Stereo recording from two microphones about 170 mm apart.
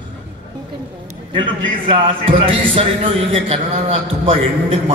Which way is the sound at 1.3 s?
30° right (ahead or behind).